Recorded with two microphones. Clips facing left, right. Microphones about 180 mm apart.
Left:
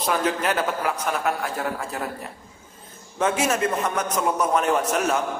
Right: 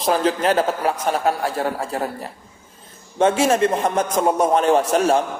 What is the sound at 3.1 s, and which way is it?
A man's voice, 30° right (ahead or behind).